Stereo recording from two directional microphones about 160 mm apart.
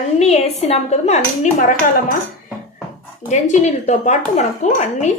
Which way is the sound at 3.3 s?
45° left (ahead or behind).